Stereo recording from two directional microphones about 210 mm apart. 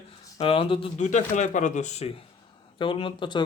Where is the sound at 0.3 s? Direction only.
25° left (ahead or behind).